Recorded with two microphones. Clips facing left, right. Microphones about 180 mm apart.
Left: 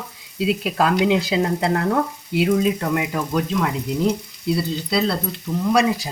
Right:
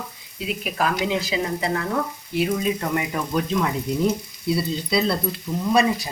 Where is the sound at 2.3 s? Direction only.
90° left.